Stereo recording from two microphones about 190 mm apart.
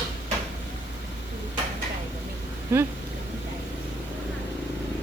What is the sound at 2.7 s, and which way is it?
Speech, 10° right (ahead or behind).